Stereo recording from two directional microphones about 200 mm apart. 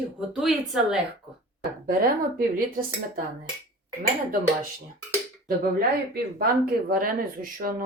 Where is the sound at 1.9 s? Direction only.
45° right (ahead or behind).